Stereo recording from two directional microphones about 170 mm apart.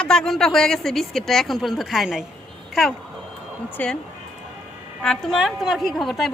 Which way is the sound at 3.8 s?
10° left (ahead or behind).